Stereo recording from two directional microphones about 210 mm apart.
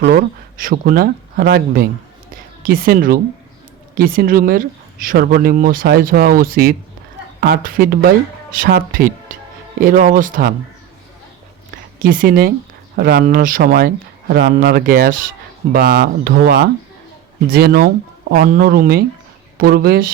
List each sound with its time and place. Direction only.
0.0 s speech: 45° right (ahead or behind)
2.3 s a sound: 45° right (ahead or behind)
3.9 s a man's voice: 45° right (ahead or behind)
12.0 s speech: 40° right (ahead or behind)